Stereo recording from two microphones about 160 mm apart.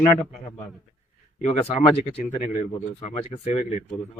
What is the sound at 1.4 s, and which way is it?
Speech, 40° left (ahead or behind).